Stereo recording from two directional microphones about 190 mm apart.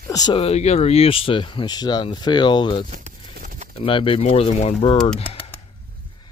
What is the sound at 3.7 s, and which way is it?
Speech, 30° left (ahead or behind).